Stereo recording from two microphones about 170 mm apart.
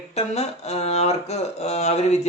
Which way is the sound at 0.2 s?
40° left (ahead or behind).